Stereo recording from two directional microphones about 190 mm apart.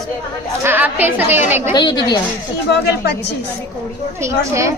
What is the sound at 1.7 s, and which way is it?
Speech, 20° left (ahead or behind).